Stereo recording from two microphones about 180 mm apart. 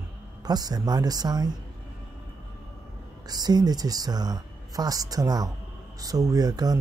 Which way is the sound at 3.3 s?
20° right (ahead or behind).